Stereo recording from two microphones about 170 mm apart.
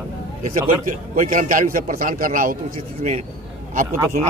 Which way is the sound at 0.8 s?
50° right (ahead or behind).